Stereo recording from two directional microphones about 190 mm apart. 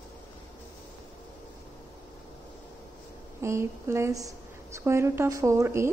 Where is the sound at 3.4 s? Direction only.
15° right (ahead or behind).